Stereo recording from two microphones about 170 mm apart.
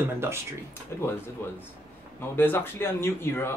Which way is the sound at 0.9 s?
15° left (ahead or behind).